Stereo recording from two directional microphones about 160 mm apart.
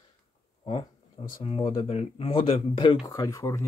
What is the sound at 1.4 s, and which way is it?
Speech, 35° left (ahead or behind).